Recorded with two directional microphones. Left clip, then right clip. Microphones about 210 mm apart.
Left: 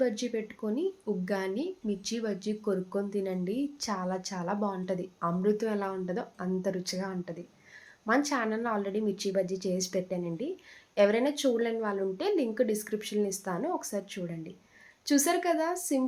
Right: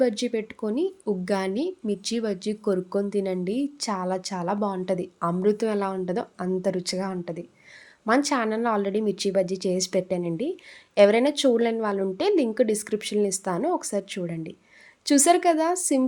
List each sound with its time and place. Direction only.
0.0 s a woman's voice: 45° right (ahead or behind)